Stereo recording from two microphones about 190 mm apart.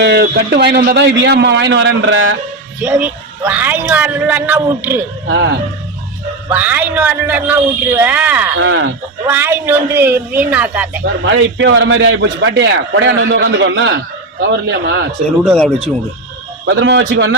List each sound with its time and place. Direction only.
0.0 s a man's voice: 60° right (ahead or behind); by 2.3 s 90° right
2.8 s speech: 5° right (ahead or behind)
6.5 s speech: 10° right (ahead or behind)
8.6 s speech: 80° right
9.2 s speech: 10° right (ahead or behind)
11.3 s a man's voice: 75° right (ahead or behind)
15.4 s speech: 5° left (ahead or behind)
16.6 s a man's voice: 65° right (ahead or behind)